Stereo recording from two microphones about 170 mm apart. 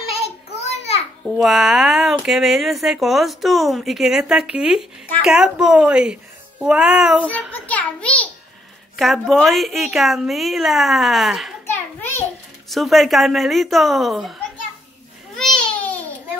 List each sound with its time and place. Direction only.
0.5 s a sound: 40° left (ahead or behind)
1.2 s speech: centre (ahead or behind)
7.2 s a child's voice: 10° left (ahead or behind)
11.6 s a sound: 15° left (ahead or behind)
12.6 s speech: centre (ahead or behind)
15.3 s babbling: 5° left (ahead or behind)